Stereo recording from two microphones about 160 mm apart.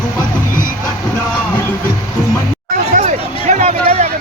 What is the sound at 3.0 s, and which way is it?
Hubbub, 45° right (ahead or behind).